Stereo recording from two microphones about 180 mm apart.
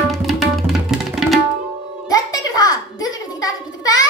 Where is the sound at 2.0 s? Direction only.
20° left (ahead or behind).